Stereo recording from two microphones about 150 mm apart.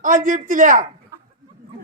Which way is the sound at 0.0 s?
60° right (ahead or behind).